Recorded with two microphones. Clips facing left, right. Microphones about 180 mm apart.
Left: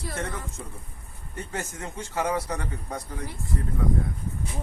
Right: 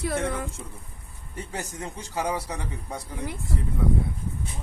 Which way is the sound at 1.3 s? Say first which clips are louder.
Even; 15° right (ahead or behind).